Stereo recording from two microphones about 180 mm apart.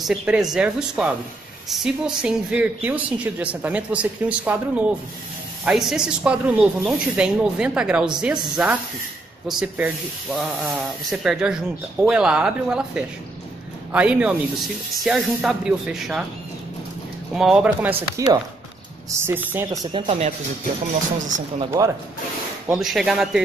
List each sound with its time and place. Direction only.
0.0 s speech: 5° right (ahead or behind)
17.3 s speech: centre (ahead or behind)
18.2 s speech: 20° right (ahead or behind)
20.1 s speech: 35° right (ahead or behind)
22.8 s speech: centre (ahead or behind)